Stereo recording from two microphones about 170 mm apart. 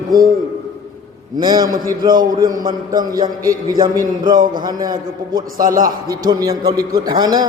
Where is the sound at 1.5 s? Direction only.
55° right (ahead or behind).